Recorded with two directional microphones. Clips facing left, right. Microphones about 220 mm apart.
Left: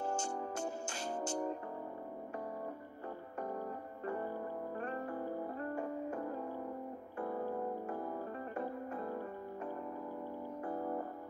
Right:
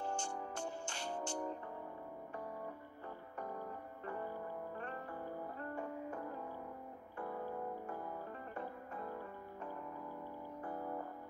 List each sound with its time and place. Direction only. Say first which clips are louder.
1.1 s music: left 4 dB; 25° left (ahead or behind)
4.7 s music: left 6 dB; 45° left (ahead or behind)
10.7 s music: left 5 dB; 40° left (ahead or behind)